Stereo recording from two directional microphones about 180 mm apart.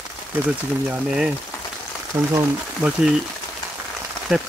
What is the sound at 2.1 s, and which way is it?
Speech, 10° right (ahead or behind).